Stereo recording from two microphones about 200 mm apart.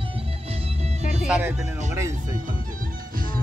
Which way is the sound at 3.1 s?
45° right (ahead or behind).